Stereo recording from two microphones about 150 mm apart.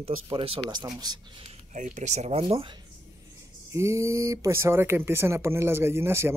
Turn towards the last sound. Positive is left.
turn(degrees=-15)  # may be behind; listen again after turning